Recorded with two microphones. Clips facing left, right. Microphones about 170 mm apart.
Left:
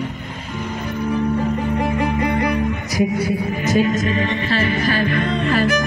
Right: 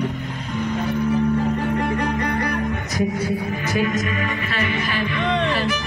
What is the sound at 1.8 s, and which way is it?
Music, 5° left (ahead or behind).